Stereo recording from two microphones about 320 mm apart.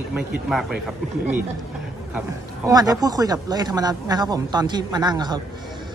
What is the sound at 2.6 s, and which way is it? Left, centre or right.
Speech, centre.